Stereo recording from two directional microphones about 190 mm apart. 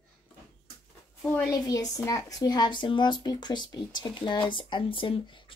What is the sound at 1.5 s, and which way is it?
Speech, 20° left (ahead or behind).